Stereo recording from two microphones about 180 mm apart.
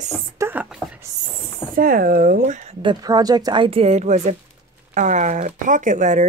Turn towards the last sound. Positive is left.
turn(degrees=-45)  # may be behind; listen again after turning